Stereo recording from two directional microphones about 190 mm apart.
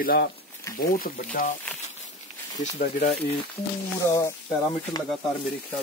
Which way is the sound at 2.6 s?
40° left (ahead or behind).